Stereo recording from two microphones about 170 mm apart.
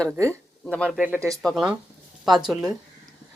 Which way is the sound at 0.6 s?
5° left (ahead or behind).